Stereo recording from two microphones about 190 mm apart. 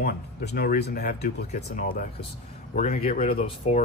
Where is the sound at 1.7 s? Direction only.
45° left (ahead or behind).